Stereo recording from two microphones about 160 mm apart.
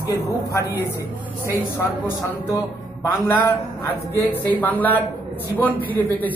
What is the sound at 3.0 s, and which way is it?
Speech, 15° left (ahead or behind).